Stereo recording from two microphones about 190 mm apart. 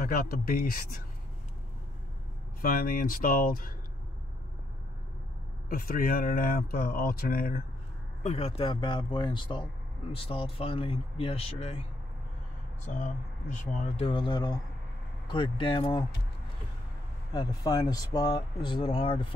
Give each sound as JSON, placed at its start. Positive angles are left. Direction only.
{"t": 0.0, "sound": "speech", "side_deg": 50}
{"t": 2.6, "sound": "speech", "side_deg": 45}
{"t": 5.7, "sound": "speech", "side_deg": 50}
{"t": 8.2, "sound": "speech", "side_deg": 35}
{"t": 12.8, "sound": "speech", "side_deg": 40}
{"t": 17.3, "sound": "speech", "side_deg": 20}